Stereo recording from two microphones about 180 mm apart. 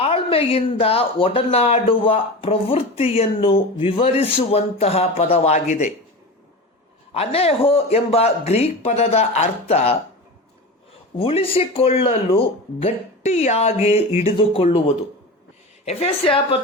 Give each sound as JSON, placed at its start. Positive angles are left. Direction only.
{"t": 0.0, "sound": "speech", "side_deg": 30}
{"t": 7.1, "sound": "speech", "side_deg": 35}
{"t": 11.2, "sound": "speech", "side_deg": 30}
{"t": 15.9, "sound": "speech", "side_deg": 35}